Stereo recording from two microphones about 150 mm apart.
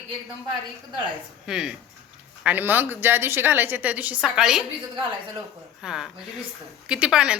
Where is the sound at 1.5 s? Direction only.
5° right (ahead or behind).